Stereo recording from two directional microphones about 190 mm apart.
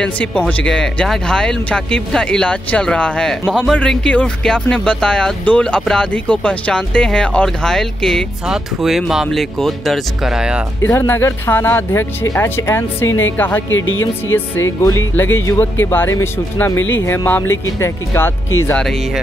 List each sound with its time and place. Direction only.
0.0 s speech: 5° left (ahead or behind)
10.9 s speech: 10° left (ahead or behind)
13.0 s speech: 90° left
14.8 s speech: 15° left (ahead or behind)